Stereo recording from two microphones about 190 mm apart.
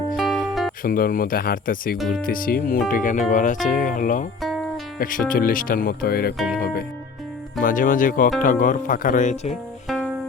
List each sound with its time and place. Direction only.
0.2 s music: centre (ahead or behind)
0.8 s speech: 50° left (ahead or behind)
7.6 s speech: 45° left (ahead or behind)